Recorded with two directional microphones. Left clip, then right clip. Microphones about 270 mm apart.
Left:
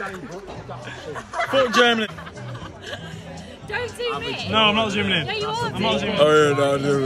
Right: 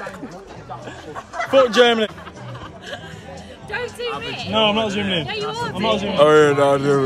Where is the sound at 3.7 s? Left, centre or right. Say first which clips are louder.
Even; centre.